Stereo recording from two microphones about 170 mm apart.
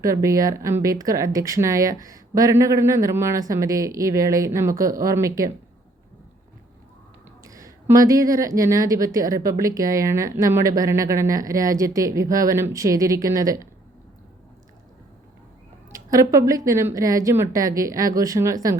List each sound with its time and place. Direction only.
0.0 s speech: 20° right (ahead or behind)
7.4 s speech: 20° right (ahead or behind)
16.3 s speech: 20° right (ahead or behind)